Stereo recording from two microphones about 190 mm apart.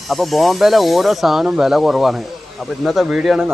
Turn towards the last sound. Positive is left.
turn(degrees=-5)  # may be behind; listen again after turning